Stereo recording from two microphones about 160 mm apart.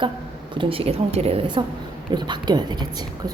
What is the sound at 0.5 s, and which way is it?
A woman's voice, 35° right (ahead or behind).